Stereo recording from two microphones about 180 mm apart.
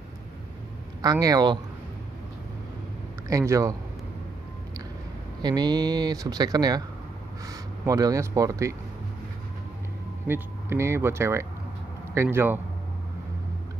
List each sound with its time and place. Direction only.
1.2 s speech: 20° right (ahead or behind)
3.3 s speech: 20° right (ahead or behind)
5.4 s speech: 25° right (ahead or behind)
10.2 s speech: 15° right (ahead or behind)